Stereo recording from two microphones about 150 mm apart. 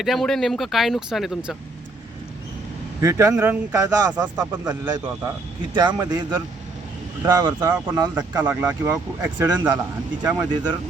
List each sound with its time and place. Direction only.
0.0 s speech: centre (ahead or behind)
3.0 s speech: 20° right (ahead or behind)
8.1 s speech: 15° right (ahead or behind)